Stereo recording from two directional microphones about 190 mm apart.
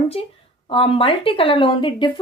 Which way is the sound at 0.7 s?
25° left (ahead or behind).